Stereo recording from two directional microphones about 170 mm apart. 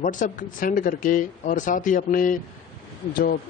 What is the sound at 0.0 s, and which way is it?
A man's voice, 50° left (ahead or behind).